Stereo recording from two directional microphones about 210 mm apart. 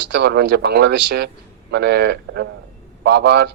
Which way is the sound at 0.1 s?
50° right (ahead or behind).